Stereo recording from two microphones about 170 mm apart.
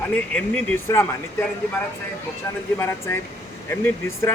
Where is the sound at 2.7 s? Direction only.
15° left (ahead or behind).